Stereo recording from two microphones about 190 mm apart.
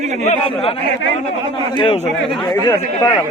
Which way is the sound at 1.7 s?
25° left (ahead or behind).